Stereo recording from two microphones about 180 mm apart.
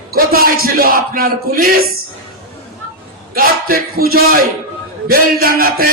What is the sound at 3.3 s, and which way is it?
Speech, 55° right (ahead or behind).